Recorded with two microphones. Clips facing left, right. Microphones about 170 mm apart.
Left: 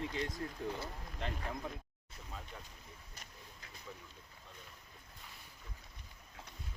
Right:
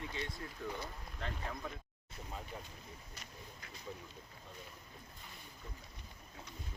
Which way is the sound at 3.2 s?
50° left (ahead or behind).